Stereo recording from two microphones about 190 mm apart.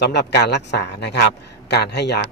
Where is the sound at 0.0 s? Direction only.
60° left (ahead or behind).